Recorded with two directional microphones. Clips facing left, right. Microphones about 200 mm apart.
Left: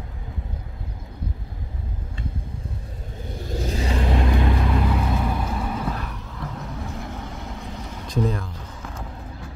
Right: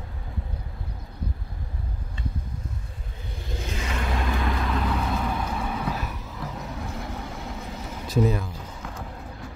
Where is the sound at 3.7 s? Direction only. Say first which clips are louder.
Left 6 dB; 35° left (ahead or behind).